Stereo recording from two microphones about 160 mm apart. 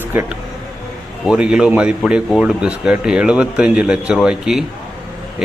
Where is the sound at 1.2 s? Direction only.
5° right (ahead or behind).